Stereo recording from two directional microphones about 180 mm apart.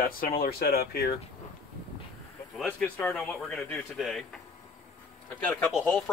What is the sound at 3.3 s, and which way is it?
Speech, centre (ahead or behind).